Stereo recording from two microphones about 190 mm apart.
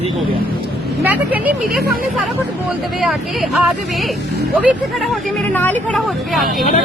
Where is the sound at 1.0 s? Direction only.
10° right (ahead or behind).